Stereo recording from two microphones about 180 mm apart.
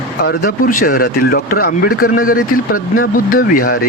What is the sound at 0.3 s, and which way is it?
Speech, 55° left (ahead or behind).